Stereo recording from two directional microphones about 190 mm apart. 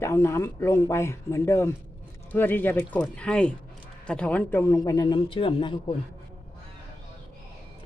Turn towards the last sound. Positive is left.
turn(degrees=30)  # may be behind; listen again after turning